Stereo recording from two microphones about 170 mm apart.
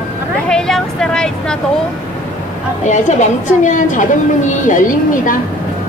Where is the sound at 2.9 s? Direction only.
45° left (ahead or behind).